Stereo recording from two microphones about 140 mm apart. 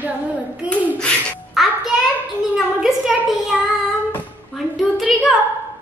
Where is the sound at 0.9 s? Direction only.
10° left (ahead or behind).